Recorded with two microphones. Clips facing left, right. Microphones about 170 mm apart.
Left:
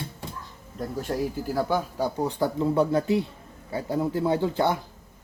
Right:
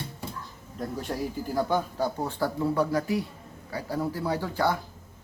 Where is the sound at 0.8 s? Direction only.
Centre (ahead or behind); by 4.8 s 20° left (ahead or behind).